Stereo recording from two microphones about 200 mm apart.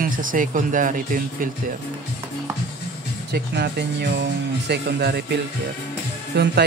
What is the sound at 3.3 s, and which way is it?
Speech, 55° right (ahead or behind).